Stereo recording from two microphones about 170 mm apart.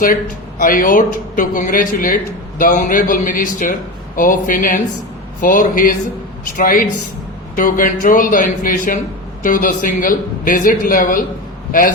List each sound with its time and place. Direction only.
0.6 s a man's voice: 50° left (ahead or behind)